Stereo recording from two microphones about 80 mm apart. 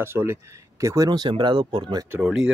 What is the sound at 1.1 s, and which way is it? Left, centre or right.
Speech, right.